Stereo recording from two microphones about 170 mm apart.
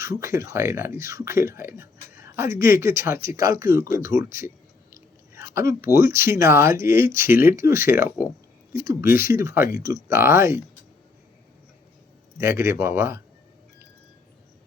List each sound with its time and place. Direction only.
0.0 s speech: 15° right (ahead or behind)
12.4 s speech: 15° right (ahead or behind)